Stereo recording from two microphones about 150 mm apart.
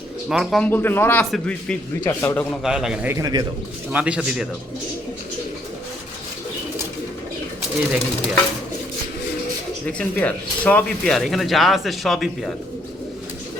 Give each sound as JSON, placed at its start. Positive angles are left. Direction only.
{"t": 0.3, "sound": "speech", "side_deg": -5}
{"t": 0.6, "sound": "speech", "side_deg": 15}
{"t": 2.0, "sound": "a man's voice", "side_deg": 20}
{"t": 2.4, "sound": "speech", "side_deg": 0}
{"t": 3.2, "sound": "a man's voice", "side_deg": -25}
{"t": 3.9, "sound": "a man's voice", "side_deg": -5}
{"t": 9.8, "sound": "speech", "side_deg": 10}